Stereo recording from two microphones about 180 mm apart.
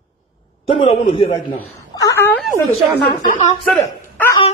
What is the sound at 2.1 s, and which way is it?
Speech, 15° left (ahead or behind).